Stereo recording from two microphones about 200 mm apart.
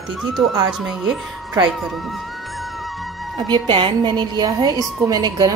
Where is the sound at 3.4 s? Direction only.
25° right (ahead or behind).